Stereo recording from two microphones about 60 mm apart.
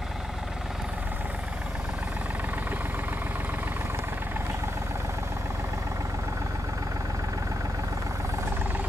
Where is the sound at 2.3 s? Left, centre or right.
Right.